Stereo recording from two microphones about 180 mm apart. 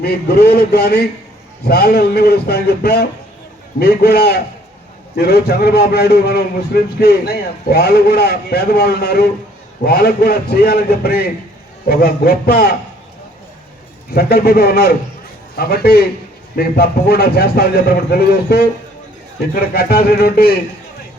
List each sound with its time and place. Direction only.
0.0 s a man's voice: 60° left (ahead or behind)
14.1 s a man's voice: 60° left (ahead or behind)